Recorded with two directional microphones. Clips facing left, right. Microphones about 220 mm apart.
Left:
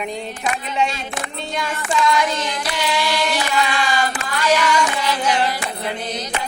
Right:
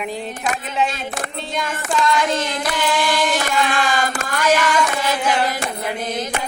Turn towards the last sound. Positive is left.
turn(degrees=-45)  # may be behind; listen again after turning